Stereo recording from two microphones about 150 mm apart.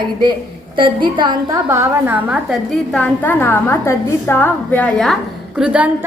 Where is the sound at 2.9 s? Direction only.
10° left (ahead or behind).